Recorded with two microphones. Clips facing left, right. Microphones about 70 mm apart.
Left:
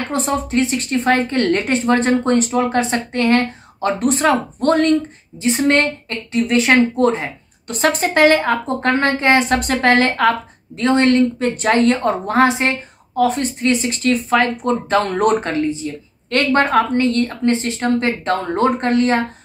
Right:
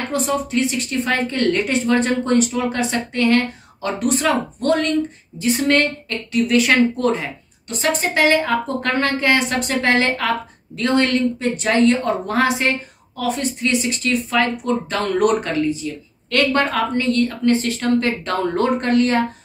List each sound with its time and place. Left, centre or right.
0.1 s a woman's voice: left
7.6 s a woman's voice: left
9.6 s speech: left
10.8 s speech: left
11.3 s a woman's voice: left